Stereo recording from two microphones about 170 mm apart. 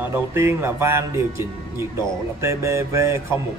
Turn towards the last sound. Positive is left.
turn(degrees=-15)  # may be behind; listen again after turning